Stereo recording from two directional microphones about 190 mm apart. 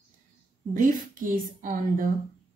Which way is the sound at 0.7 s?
45° right (ahead or behind).